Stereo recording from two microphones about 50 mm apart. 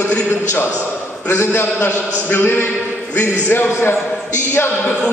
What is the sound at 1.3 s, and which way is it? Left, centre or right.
A man's voice, left.